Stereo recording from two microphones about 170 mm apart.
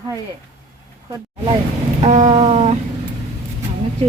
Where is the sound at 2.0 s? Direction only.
45° right (ahead or behind).